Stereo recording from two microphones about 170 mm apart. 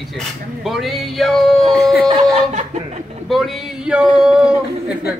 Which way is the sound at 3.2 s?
Centre (ahead or behind).